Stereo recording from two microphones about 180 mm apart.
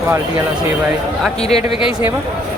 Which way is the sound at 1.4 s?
35° left (ahead or behind).